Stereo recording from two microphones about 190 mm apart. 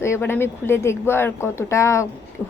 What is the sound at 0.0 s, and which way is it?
A woman's voice, 15° left (ahead or behind).